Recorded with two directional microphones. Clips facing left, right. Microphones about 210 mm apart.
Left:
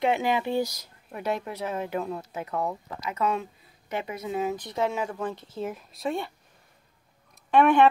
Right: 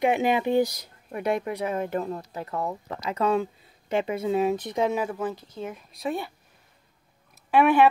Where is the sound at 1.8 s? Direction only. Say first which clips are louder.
Right 2 dB; 5° left (ahead or behind).